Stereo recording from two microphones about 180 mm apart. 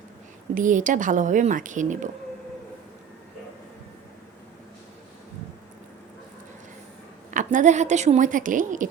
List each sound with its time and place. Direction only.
0.5 s a woman's voice: 45° right (ahead or behind)
7.3 s a woman's voice: 45° right (ahead or behind)